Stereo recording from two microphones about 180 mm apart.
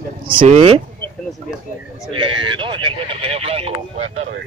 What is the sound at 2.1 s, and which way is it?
Speech, 25° right (ahead or behind).